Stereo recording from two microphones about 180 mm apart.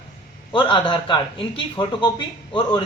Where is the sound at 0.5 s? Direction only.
25° left (ahead or behind).